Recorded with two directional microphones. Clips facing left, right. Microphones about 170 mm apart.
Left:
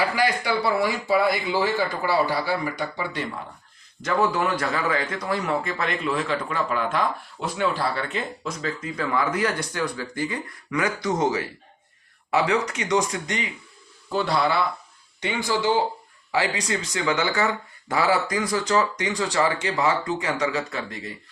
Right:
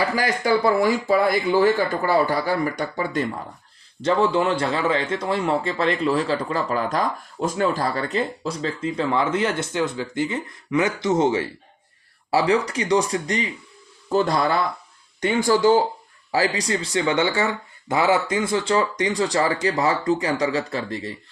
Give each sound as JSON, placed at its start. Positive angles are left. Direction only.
{"t": 0.2, "sound": "speech", "side_deg": -45}
{"t": 4.0, "sound": "a man's voice", "side_deg": -30}